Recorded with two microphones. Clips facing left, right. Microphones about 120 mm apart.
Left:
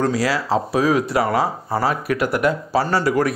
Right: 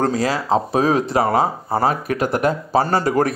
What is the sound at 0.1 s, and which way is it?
Speech, 25° right (ahead or behind).